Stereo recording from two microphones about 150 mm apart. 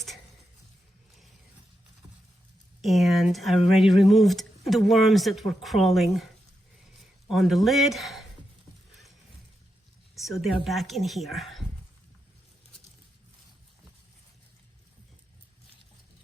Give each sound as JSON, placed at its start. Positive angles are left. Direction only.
{"t": 2.8, "sound": "speech", "side_deg": 0}
{"t": 7.3, "sound": "speech", "side_deg": 0}
{"t": 10.4, "sound": "speech", "side_deg": 0}